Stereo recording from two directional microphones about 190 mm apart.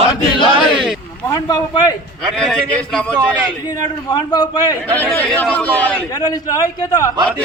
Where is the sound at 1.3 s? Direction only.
20° left (ahead or behind).